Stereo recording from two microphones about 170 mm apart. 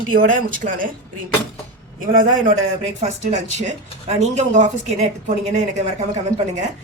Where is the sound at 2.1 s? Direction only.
55° right (ahead or behind).